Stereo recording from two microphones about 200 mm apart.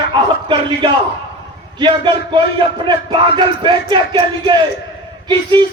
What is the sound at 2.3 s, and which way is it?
Music, 25° right (ahead or behind).